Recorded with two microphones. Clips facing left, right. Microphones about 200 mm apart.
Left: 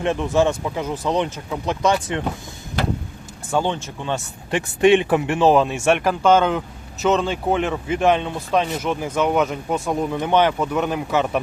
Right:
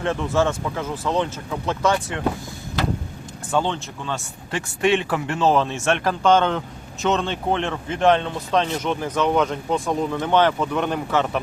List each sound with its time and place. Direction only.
0.0 s speech: 15° left (ahead or behind)
3.5 s speech: 15° left (ahead or behind)